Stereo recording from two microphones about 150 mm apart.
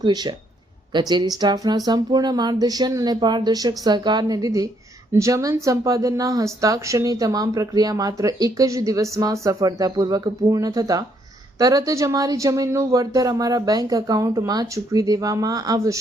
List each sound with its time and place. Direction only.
0.0 s speech: 30° right (ahead or behind)